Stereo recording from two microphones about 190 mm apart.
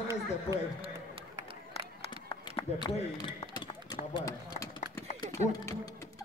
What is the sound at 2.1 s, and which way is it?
Run, 25° left (ahead or behind).